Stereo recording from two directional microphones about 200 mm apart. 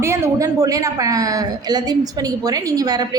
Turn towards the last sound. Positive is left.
turn(degrees=-20)  # may be behind; listen again after turning